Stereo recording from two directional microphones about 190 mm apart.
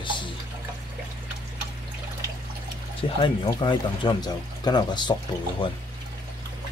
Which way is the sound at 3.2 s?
25° left (ahead or behind).